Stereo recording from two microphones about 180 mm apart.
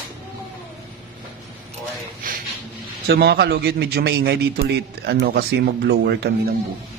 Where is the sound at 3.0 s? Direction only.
60° right (ahead or behind).